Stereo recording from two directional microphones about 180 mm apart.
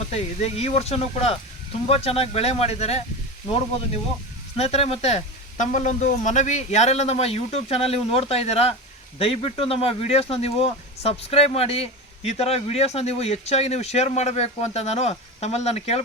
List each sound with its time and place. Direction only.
0.1 s speech: 35° left (ahead or behind)
4.5 s speech: 35° left (ahead or behind)